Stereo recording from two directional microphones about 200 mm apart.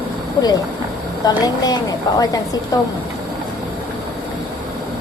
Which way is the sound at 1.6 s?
20° left (ahead or behind).